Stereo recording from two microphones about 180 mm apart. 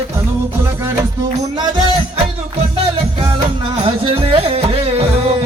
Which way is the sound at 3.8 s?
30° right (ahead or behind).